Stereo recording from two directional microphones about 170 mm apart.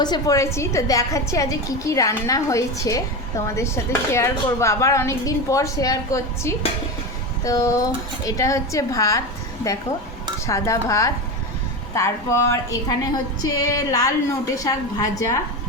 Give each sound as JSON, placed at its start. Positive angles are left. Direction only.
{"t": 0.0, "sound": "a woman's voice", "side_deg": 20}